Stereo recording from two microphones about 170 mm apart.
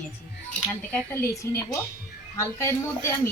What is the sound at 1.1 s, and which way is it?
A woman's voice, 15° left (ahead or behind).